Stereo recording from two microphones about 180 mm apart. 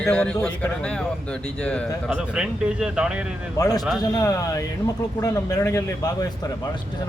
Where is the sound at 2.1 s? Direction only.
5° right (ahead or behind).